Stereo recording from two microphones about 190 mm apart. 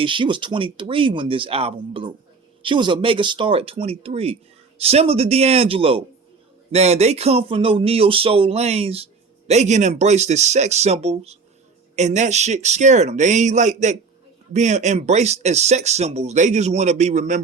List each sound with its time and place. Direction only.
0.0 s speech: 25° right (ahead or behind)